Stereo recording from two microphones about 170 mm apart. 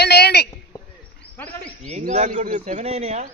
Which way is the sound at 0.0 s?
75° left (ahead or behind).